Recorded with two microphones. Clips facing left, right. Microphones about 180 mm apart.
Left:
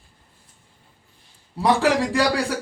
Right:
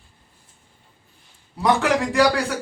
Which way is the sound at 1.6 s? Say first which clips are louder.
Even; 30° left (ahead or behind).